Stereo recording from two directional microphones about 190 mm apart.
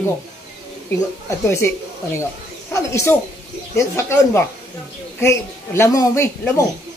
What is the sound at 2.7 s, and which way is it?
A woman's voice, 15° left (ahead or behind).